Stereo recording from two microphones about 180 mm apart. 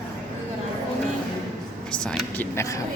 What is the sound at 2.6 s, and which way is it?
Speech, 15° left (ahead or behind).